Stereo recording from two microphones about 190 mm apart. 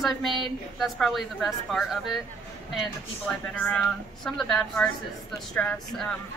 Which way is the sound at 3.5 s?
5° left (ahead or behind).